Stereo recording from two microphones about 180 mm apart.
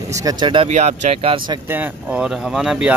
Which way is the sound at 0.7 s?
40° right (ahead or behind).